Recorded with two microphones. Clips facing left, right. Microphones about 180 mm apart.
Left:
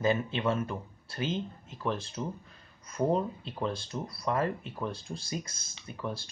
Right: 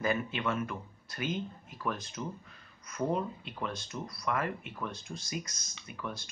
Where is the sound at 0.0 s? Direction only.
25° left (ahead or behind).